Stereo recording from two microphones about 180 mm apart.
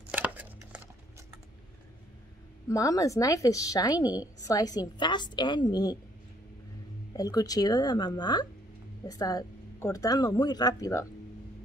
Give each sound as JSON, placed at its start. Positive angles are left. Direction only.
{"t": 0.1, "sound": "a sound", "side_deg": -10}
{"t": 2.7, "sound": "a woman's voice", "side_deg": 20}
{"t": 7.2, "sound": "a woman's voice", "side_deg": 20}